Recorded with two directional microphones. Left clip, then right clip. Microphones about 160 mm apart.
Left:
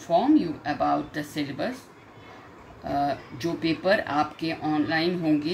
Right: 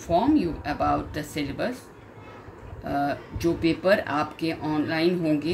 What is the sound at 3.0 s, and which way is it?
Speech, 30° right (ahead or behind).